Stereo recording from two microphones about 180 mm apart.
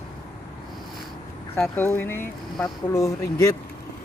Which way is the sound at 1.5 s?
10° left (ahead or behind).